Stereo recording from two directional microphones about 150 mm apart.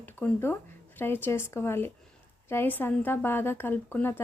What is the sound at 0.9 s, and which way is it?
Speech, 15° left (ahead or behind).